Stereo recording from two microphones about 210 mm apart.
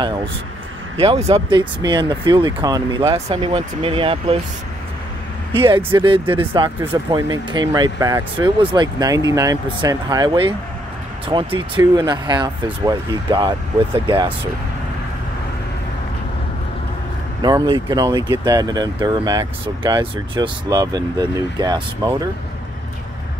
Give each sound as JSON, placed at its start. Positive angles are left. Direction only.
{"t": 0.9, "sound": "speech", "side_deg": -30}
{"t": 5.5, "sound": "speech", "side_deg": -25}
{"t": 17.4, "sound": "speech", "side_deg": -20}